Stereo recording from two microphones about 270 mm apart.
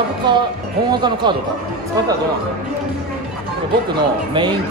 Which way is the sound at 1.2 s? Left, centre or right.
Centre.